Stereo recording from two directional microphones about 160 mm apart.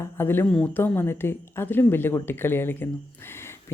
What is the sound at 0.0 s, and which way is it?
Speech, 15° left (ahead or behind).